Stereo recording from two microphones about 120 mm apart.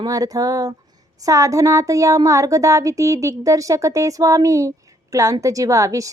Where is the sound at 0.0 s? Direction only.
30° right (ahead or behind).